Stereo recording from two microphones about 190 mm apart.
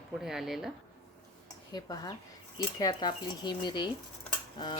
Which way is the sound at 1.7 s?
20° left (ahead or behind).